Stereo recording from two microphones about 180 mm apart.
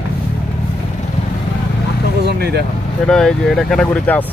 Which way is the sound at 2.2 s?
65° right (ahead or behind).